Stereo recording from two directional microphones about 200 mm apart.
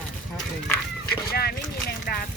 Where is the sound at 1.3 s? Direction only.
50° left (ahead or behind).